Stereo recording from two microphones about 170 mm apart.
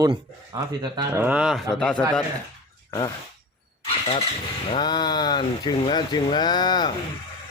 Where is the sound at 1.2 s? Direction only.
5° right (ahead or behind).